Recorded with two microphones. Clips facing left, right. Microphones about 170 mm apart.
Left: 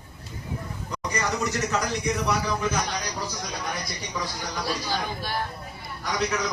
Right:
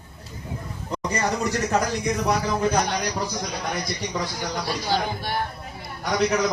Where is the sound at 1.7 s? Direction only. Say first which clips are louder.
Right 3 dB; 55° right (ahead or behind).